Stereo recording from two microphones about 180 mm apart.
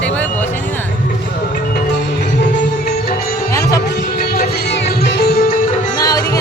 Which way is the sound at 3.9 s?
60° left (ahead or behind).